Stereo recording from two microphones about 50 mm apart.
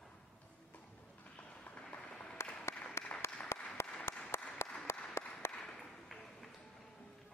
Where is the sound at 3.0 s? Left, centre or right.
Left.